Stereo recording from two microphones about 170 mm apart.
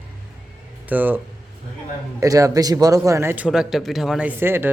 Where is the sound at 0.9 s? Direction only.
10° right (ahead or behind).